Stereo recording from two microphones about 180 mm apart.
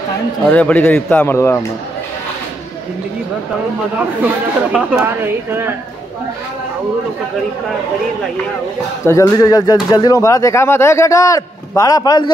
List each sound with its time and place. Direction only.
0.5 s speech: 10° left (ahead or behind)
4.7 s a woman's voice: 10° right (ahead or behind)
9.0 s speech: 15° left (ahead or behind)